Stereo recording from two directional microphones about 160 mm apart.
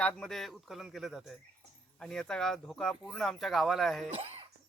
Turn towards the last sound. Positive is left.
turn(degrees=-40)  # may be behind; listen again after turning